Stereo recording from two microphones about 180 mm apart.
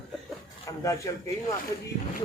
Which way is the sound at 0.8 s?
15° left (ahead or behind).